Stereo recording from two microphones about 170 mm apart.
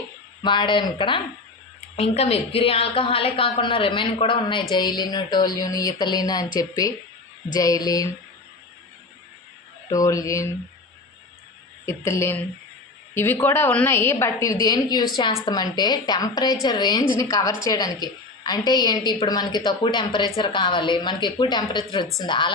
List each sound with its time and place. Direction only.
0.4 s a woman's voice: 25° left (ahead or behind)
9.9 s a woman's voice: 20° left (ahead or behind)
11.9 s a woman's voice: 15° left (ahead or behind)